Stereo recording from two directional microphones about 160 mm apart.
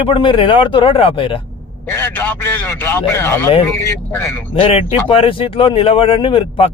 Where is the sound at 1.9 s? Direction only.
10° left (ahead or behind).